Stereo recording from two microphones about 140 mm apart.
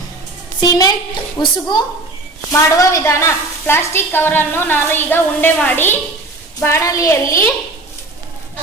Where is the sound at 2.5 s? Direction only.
20° left (ahead or behind).